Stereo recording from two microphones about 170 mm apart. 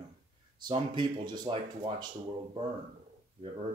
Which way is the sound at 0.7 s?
30° right (ahead or behind).